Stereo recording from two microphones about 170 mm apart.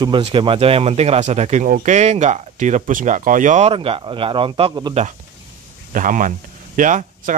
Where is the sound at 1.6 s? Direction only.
50° right (ahead or behind); by 4.9 s 30° right (ahead or behind).